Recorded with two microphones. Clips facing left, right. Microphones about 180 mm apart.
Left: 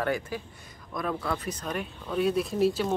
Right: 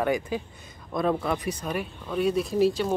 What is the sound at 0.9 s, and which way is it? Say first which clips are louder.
Speech: right 6 dB; 25° right (ahead or behind).